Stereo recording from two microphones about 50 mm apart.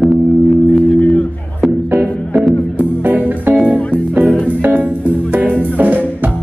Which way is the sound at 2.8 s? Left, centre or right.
Right.